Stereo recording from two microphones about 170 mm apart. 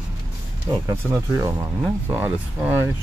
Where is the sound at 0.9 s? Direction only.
15° right (ahead or behind).